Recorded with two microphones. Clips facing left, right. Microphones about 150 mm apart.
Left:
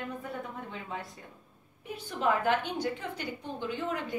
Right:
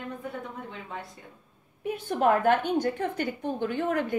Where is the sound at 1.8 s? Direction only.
55° right (ahead or behind).